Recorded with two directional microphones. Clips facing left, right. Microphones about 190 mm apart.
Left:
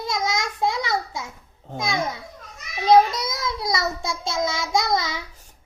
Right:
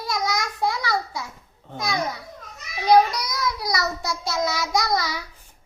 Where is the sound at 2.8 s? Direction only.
25° left (ahead or behind).